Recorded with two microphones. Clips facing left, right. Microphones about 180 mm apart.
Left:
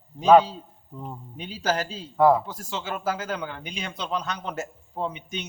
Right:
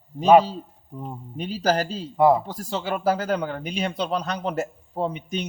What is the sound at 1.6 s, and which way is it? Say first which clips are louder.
Speech: right 4 dB; 35° right (ahead or behind).